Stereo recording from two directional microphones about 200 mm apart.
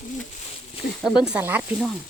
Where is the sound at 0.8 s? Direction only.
50° left (ahead or behind).